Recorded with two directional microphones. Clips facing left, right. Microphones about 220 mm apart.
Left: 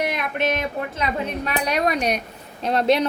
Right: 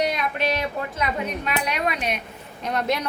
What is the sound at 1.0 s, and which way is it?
A woman's voice, 30° left (ahead or behind).